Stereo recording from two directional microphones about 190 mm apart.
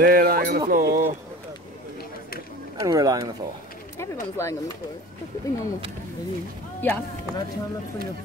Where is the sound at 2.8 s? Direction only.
20° right (ahead or behind).